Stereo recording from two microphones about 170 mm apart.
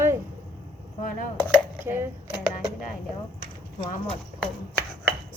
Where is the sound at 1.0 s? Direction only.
55° left (ahead or behind).